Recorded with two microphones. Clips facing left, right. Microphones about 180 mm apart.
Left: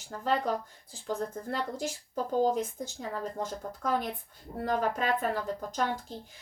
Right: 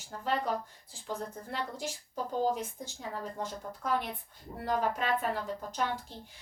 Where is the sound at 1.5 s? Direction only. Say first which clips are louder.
Left 4 dB; 45° left (ahead or behind).